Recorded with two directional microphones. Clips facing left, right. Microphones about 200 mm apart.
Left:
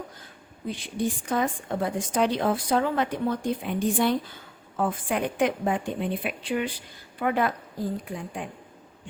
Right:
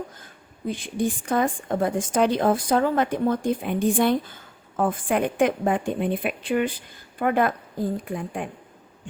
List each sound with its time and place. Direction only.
0.7 s a woman's voice: 50° right (ahead or behind)